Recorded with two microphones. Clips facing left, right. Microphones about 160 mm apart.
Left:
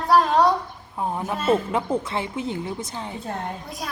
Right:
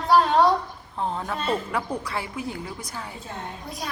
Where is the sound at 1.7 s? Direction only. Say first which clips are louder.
Left 4 dB; 25° left (ahead or behind).